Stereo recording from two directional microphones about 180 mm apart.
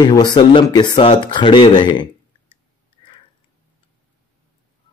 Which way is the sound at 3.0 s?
25° left (ahead or behind).